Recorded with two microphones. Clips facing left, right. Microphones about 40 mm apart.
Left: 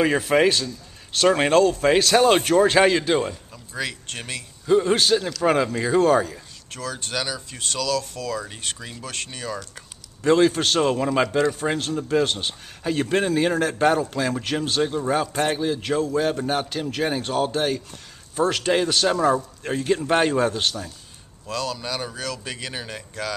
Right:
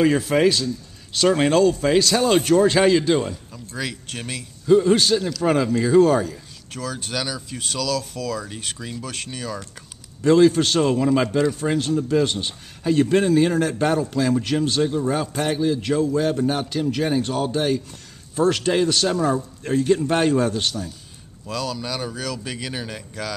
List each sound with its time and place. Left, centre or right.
0.0 s a man's voice: centre
1.9 s a man's voice: left; by 23.3 s centre